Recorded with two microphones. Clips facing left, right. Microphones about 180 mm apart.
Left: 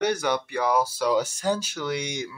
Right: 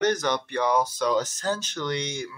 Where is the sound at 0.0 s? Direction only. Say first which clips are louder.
Even; 10° left (ahead or behind).